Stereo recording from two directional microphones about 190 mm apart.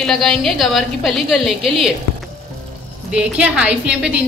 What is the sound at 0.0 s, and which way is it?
A woman's voice, centre (ahead or behind).